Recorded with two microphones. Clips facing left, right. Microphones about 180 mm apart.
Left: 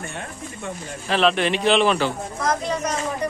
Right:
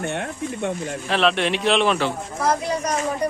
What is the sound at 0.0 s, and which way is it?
Speech, 65° right (ahead or behind).